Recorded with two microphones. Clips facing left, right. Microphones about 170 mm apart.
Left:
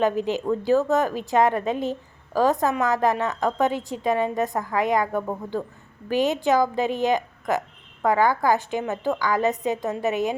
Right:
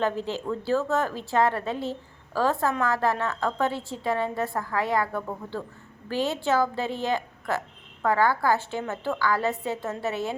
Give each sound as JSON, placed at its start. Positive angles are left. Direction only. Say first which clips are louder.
{"t": 0.0, "sound": "a woman's voice", "louder": "left 5 dB", "side_deg": 15}